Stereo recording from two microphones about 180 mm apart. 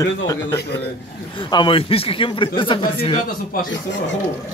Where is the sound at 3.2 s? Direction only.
50° left (ahead or behind).